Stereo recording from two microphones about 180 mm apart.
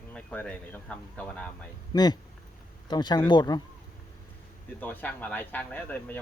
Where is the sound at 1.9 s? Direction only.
20° left (ahead or behind).